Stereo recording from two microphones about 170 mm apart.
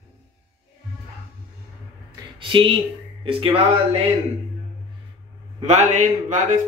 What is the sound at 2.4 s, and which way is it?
Speech, 30° right (ahead or behind).